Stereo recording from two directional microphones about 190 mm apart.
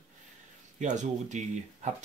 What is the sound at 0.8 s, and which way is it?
Speech, 40° right (ahead or behind).